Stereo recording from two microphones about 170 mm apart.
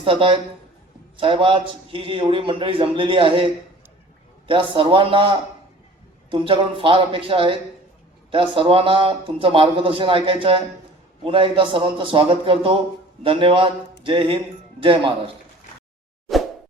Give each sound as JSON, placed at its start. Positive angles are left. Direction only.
{"t": 0.0, "sound": "a man's voice", "side_deg": -30}